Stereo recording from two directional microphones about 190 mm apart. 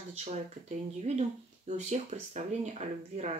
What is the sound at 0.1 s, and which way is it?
Speech, 35° right (ahead or behind).